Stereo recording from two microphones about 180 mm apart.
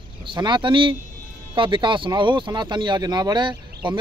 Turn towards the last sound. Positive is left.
turn(degrees=-25)  # may be behind; listen again after turning